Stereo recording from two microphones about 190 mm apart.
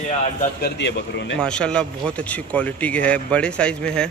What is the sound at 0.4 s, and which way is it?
Speech, 60° left (ahead or behind).